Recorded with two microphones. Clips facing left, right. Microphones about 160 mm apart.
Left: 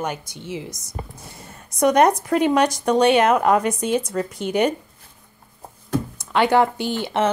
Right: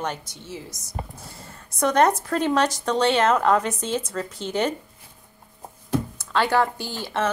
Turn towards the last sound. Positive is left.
turn(degrees=20)  # may be behind; listen again after turning